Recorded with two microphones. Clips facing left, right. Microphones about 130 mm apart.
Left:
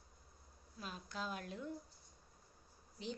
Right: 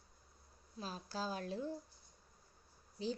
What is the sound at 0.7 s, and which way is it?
A woman's voice, 35° right (ahead or behind).